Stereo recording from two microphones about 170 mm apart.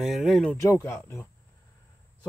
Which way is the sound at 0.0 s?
Centre (ahead or behind).